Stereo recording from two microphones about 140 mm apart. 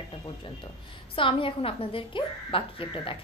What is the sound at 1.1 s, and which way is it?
A woman's voice, 40° left (ahead or behind).